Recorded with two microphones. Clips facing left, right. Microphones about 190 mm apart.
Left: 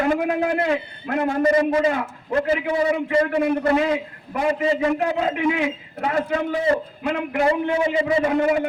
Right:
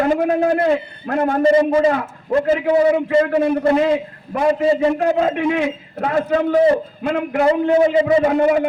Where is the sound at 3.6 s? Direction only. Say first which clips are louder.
Right 4 dB; 30° right (ahead or behind).